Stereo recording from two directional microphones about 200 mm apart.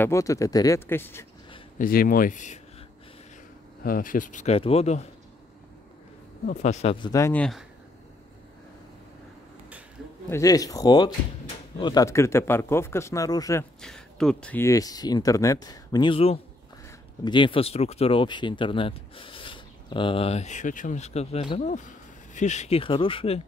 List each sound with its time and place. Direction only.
0.0 s speech: 15° left (ahead or behind)
1.8 s speech: 45° left (ahead or behind)
3.8 s speech: 45° left (ahead or behind)
6.4 s speech: 35° left (ahead or behind); by 7.6 s 5° left (ahead or behind)
10.3 s speech: 15° left (ahead or behind)
13.7 s speech: 5° left (ahead or behind); by 23.4 s 30° left (ahead or behind)